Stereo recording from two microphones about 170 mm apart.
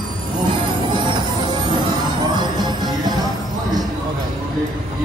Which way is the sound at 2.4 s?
25° right (ahead or behind).